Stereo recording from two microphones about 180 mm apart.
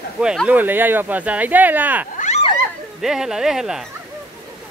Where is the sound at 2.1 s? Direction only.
40° left (ahead or behind).